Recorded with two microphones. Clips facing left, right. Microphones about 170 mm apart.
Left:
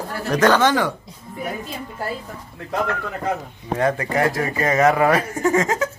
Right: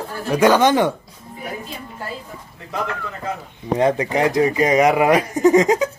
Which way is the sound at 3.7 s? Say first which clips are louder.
Right 2 dB; 20° right (ahead or behind).